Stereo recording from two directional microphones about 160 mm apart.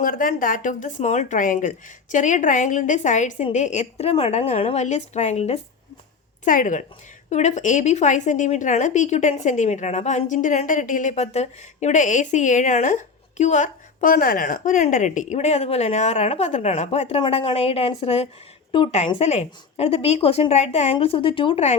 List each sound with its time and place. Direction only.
0.0 s a woman's voice: 60° left (ahead or behind)
6.4 s a woman's voice: 55° left (ahead or behind)